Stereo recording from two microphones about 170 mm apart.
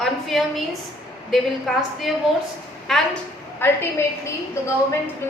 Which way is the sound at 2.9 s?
Centre (ahead or behind).